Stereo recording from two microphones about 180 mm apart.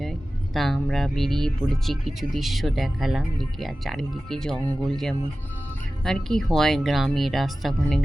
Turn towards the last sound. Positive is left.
turn(degrees=0)  # may be behind; listen again after turning